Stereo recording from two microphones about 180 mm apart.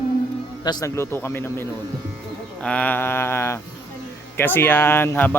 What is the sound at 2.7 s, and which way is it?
Speech, 10° left (ahead or behind).